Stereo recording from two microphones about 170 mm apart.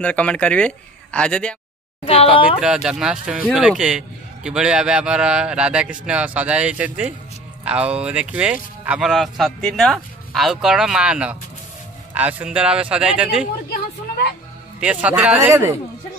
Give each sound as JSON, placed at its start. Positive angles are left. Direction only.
{"t": 0.0, "sound": "speech", "side_deg": 5}
{"t": 2.0, "sound": "speech", "side_deg": 35}
{"t": 2.6, "sound": "a man's voice", "side_deg": -5}
{"t": 14.8, "sound": "a man's voice", "side_deg": -10}